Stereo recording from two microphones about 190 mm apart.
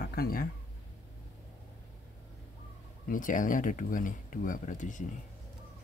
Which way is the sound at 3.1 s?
45° left (ahead or behind).